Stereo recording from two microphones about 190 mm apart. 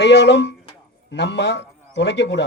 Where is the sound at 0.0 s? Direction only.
65° left (ahead or behind).